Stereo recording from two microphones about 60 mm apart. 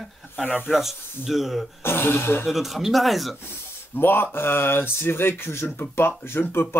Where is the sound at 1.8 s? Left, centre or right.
Left.